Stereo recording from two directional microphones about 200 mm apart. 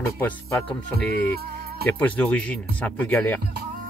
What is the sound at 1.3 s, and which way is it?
Music, 50° right (ahead or behind).